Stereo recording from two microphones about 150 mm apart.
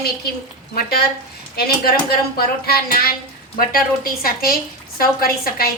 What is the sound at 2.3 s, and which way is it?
A woman's voice, 85° left.